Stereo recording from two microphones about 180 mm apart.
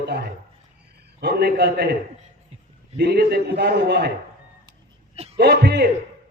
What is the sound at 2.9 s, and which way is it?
A man's voice, 65° right (ahead or behind).